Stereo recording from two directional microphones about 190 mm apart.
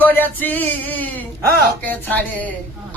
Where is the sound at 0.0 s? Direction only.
10° left (ahead or behind).